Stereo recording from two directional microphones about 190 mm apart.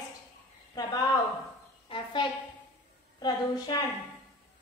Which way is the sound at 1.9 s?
25° left (ahead or behind).